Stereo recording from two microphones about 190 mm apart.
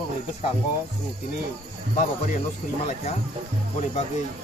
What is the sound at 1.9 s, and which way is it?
Speech, 40° left (ahead or behind).